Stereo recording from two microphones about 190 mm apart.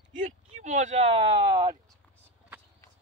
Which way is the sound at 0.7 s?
40° right (ahead or behind).